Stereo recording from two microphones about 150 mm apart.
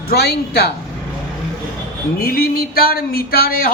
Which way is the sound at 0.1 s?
90° left.